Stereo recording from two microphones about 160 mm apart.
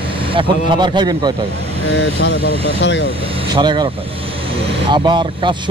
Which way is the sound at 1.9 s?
90° left.